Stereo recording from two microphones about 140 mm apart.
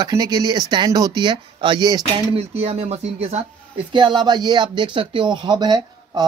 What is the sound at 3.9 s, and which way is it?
Speech, 35° right (ahead or behind).